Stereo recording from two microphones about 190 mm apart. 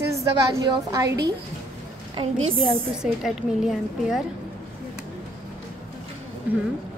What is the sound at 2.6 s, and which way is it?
A woman's voice, centre (ahead or behind).